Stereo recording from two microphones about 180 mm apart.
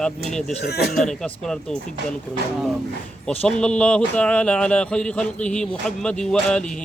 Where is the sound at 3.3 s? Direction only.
5° left (ahead or behind).